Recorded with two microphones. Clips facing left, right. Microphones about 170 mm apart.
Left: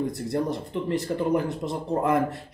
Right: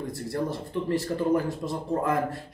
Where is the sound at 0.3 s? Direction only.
20° left (ahead or behind).